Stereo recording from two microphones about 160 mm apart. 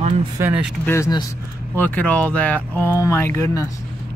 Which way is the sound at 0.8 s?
20° left (ahead or behind).